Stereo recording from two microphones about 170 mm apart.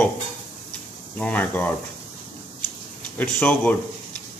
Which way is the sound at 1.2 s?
10° left (ahead or behind).